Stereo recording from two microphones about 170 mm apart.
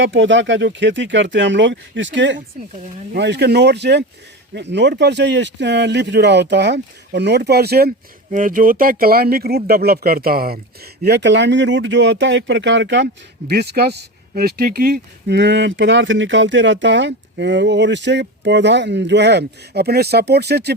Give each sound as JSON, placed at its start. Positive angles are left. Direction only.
{"t": 0.0, "sound": "speech", "side_deg": -90}
{"t": 4.5, "sound": "speech", "side_deg": -90}
{"t": 11.0, "sound": "speech", "side_deg": -85}
{"t": 13.5, "sound": "speech", "side_deg": -75}